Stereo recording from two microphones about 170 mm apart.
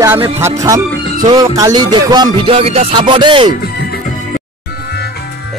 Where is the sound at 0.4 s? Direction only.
20° right (ahead or behind).